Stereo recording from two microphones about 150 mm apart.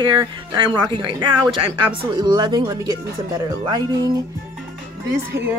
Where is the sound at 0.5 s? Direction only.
30° right (ahead or behind).